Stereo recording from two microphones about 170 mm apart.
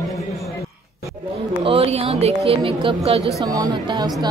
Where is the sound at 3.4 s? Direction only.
20° right (ahead or behind).